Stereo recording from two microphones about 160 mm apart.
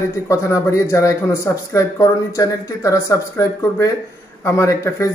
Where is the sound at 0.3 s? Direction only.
20° left (ahead or behind).